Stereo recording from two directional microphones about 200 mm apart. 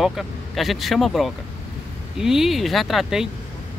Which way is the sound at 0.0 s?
Centre (ahead or behind).